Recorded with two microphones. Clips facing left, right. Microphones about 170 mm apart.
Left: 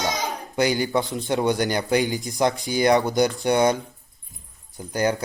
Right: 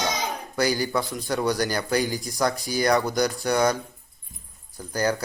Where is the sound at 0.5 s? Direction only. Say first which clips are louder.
Left 3 dB; 20° left (ahead or behind).